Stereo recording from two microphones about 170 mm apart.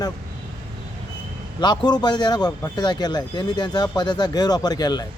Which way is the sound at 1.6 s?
25° left (ahead or behind).